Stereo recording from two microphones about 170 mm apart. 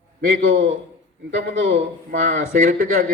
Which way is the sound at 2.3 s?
45° right (ahead or behind).